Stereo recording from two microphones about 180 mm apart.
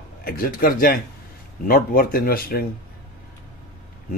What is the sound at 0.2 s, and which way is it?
Speech, 55° left (ahead or behind).